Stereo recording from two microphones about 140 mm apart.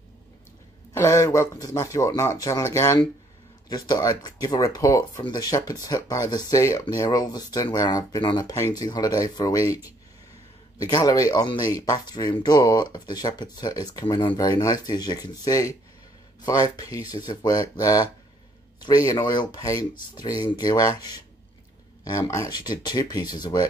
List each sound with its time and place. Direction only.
0.9 s speech: 20° left (ahead or behind)
10.8 s speech: 25° left (ahead or behind)